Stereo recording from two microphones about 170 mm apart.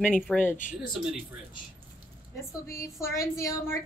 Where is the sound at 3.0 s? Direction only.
15° left (ahead or behind).